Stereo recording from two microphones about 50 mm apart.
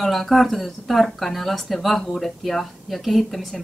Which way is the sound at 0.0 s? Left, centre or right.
Centre.